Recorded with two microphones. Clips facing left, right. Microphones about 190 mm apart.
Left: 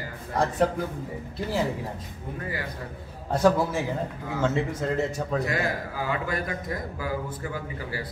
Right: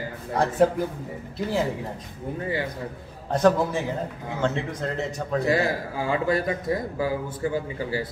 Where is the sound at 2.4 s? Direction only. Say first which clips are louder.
Right 6 dB; 25° right (ahead or behind).